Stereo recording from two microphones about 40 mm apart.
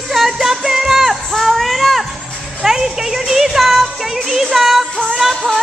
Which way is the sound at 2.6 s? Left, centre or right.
Centre.